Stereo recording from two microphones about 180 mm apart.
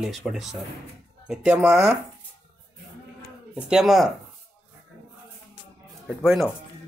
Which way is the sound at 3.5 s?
5° right (ahead or behind).